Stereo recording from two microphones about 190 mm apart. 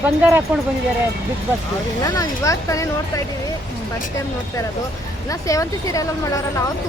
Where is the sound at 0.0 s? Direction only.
10° right (ahead or behind).